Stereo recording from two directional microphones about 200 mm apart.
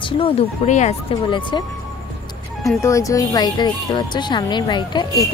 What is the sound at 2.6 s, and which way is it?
Speech, 15° left (ahead or behind).